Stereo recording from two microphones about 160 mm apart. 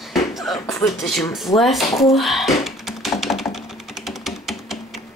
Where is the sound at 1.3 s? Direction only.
Centre (ahead or behind).